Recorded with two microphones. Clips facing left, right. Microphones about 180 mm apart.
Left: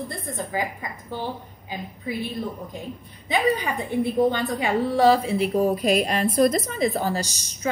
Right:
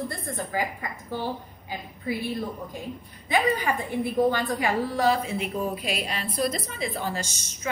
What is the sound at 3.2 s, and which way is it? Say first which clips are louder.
A woman's voice: left 1 dB; 20° left (ahead or behind).